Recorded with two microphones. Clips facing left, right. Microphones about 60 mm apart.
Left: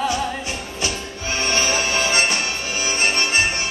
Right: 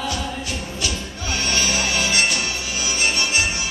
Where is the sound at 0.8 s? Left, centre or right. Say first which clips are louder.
Left 1 dB; left.